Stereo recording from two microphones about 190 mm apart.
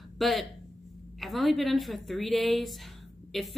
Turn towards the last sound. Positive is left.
turn(degrees=0)  # may be behind; listen again after turning